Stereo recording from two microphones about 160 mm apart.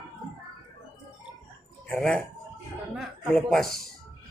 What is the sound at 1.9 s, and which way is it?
Speech, 5° left (ahead or behind).